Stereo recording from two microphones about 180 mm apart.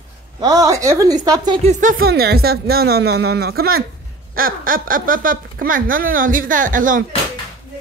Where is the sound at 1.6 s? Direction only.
50° right (ahead or behind).